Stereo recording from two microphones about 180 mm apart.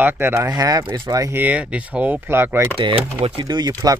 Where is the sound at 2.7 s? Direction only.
30° right (ahead or behind).